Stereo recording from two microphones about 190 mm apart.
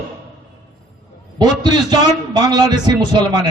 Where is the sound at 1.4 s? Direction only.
20° right (ahead or behind).